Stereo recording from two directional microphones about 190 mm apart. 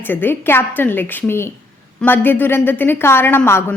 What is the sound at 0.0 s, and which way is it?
A woman's voice, 10° left (ahead or behind).